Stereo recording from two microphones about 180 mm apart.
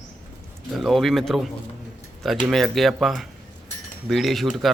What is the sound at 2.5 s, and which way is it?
A man's voice, centre (ahead or behind).